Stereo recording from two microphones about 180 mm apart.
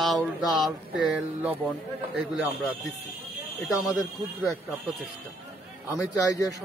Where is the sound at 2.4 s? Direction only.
10° right (ahead or behind).